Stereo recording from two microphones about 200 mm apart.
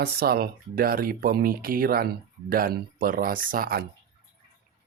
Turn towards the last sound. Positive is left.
turn(degrees=-45)  # may be behind; listen again after turning